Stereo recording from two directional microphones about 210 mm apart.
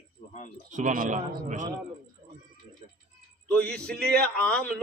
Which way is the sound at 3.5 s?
5° left (ahead or behind).